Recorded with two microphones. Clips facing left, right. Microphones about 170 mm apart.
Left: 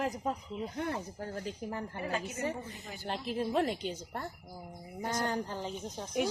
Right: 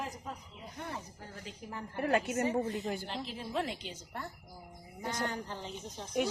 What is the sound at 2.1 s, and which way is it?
Speech, 60° right (ahead or behind).